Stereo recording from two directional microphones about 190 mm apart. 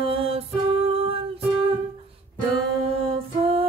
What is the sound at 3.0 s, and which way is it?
Music, 30° right (ahead or behind).